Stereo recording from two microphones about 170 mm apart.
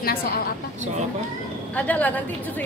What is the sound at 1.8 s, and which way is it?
Speech, 10° left (ahead or behind).